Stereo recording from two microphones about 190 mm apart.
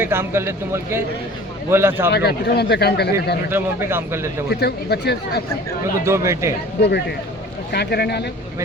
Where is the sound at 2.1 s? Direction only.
55° left (ahead or behind).